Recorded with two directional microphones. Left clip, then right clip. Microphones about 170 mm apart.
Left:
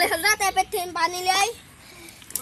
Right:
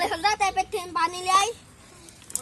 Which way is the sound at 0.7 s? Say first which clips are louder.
Left 1 dB; 35° left (ahead or behind).